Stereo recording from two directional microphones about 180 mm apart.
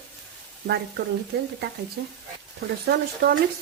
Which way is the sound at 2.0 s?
65° right (ahead or behind).